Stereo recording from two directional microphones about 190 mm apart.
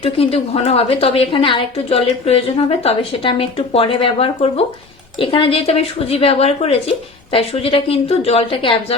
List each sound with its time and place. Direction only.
0.0 s a woman's voice: 30° left (ahead or behind)